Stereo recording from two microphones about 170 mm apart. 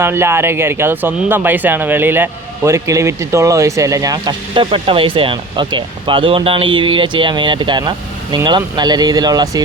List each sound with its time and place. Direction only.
0.0 s speech: 15° right (ahead or behind)